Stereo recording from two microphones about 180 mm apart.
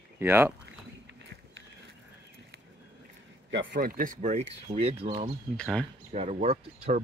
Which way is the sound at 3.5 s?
90° right.